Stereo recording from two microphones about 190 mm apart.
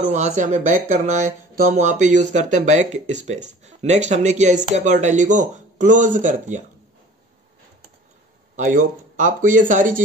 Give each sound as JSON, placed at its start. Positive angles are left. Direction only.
{"t": 0.1, "sound": "speech", "side_deg": -35}
{"t": 8.5, "sound": "speech", "side_deg": -40}